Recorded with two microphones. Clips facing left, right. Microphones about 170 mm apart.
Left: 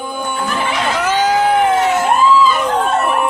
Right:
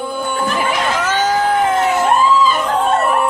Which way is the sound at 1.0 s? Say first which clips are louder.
Left 4 dB; 10° left (ahead or behind).